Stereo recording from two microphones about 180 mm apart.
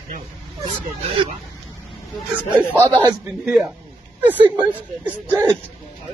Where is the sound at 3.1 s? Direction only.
5° right (ahead or behind).